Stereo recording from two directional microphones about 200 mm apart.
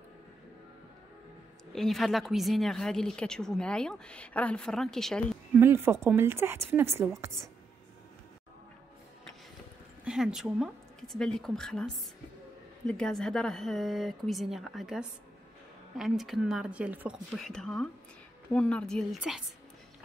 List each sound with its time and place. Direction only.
1.7 s a woman's voice: centre (ahead or behind)
5.5 s speech: 10° right (ahead or behind)
10.0 s a woman's voice: 5° right (ahead or behind)